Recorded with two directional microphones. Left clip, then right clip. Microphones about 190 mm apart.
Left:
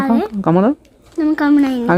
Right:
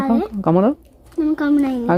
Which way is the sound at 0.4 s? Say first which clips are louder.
Left 1 dB; 5° left (ahead or behind).